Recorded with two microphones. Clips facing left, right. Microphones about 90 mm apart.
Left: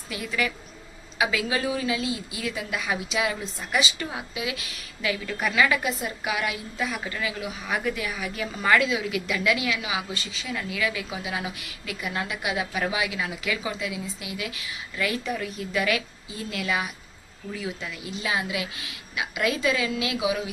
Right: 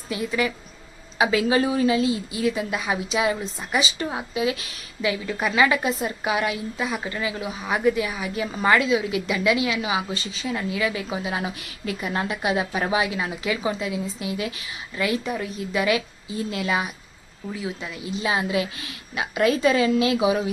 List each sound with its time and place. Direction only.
0.1 s a woman's voice: 25° right (ahead or behind)
5.0 s a woman's voice: 20° right (ahead or behind); by 20.4 s 35° right (ahead or behind)